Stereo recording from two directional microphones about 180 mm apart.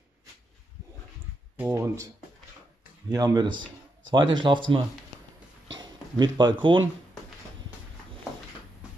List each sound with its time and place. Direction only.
1.6 s speech: 15° right (ahead or behind)
3.1 s speech: 20° right (ahead or behind)
5.8 s speech: 25° right (ahead or behind)